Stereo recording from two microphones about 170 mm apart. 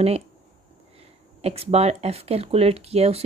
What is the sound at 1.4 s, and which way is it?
Speech, 35° right (ahead or behind).